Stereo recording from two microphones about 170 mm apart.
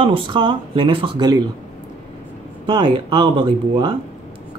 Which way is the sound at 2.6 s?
30° right (ahead or behind).